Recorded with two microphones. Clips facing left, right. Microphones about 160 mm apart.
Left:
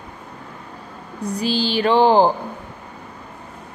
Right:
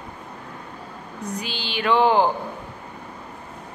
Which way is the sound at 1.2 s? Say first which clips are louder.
Left 10 dB; 35° left (ahead or behind).